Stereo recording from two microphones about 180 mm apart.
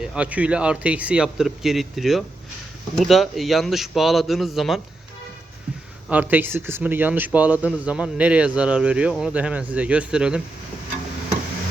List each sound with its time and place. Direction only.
0.0 s speech: 5° right (ahead or behind)
6.1 s speech: 10° right (ahead or behind)